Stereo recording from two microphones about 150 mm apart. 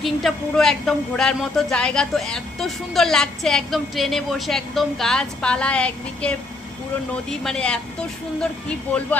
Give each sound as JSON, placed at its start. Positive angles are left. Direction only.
{"t": 0.0, "sound": "a woman's voice", "side_deg": 0}
{"t": 8.9, "sound": "speech", "side_deg": 10}